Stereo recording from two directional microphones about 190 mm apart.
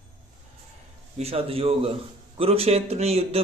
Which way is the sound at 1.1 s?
30° right (ahead or behind).